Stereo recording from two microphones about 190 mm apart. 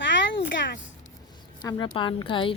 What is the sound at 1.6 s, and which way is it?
Speech, 20° left (ahead or behind).